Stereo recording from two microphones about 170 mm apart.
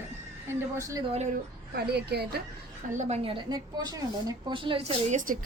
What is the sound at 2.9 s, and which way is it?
Speech, 45° right (ahead or behind).